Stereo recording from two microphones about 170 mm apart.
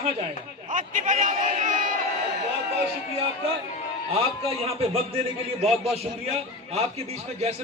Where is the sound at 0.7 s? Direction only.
50° right (ahead or behind).